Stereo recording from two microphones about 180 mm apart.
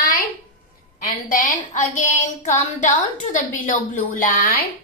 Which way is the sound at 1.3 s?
50° left (ahead or behind).